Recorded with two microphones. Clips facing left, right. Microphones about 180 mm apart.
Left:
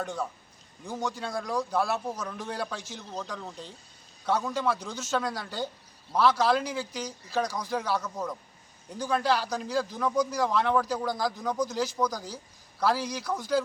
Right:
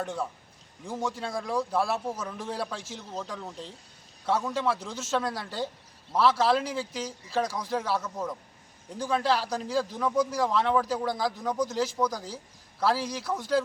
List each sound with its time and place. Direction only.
1.2 s speech: 5° right (ahead or behind)
4.8 s speech: 25° right (ahead or behind)
5.1 s speech: centre (ahead or behind)